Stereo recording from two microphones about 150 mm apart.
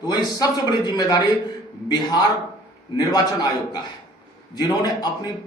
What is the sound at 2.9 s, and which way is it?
A man's voice, 25° left (ahead or behind).